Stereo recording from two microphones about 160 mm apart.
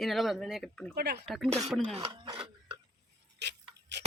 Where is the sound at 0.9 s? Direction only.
90° right.